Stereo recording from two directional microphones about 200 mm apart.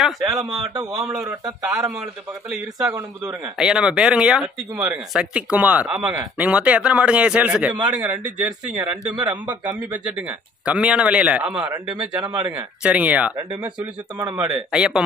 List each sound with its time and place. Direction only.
0.3 s speech: 20° right (ahead or behind)
3.5 s a man's voice: 5° right (ahead or behind)
10.6 s a man's voice: 5° right (ahead or behind)
12.2 s speech: 20° right (ahead or behind)
12.8 s speech: 5° right (ahead or behind)